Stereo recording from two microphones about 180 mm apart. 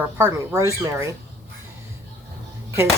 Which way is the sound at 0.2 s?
15° right (ahead or behind).